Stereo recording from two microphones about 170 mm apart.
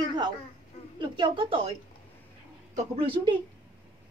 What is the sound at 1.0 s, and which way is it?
Speech, 30° right (ahead or behind).